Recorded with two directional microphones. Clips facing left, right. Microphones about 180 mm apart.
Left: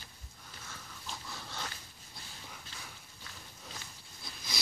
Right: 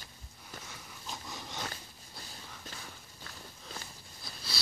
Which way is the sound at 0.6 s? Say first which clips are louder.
Right 1 dB; 15° right (ahead or behind).